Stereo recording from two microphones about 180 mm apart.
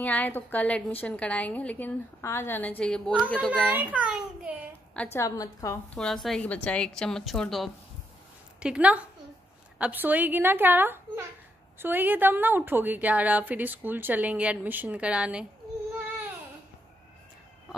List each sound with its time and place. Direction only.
0.0 s a woman's voice: 10° left (ahead or behind)
3.7 s a woman's voice: 5° right (ahead or behind)
4.9 s a woman's voice: 15° left (ahead or behind)
5.9 s a woman's voice: centre (ahead or behind)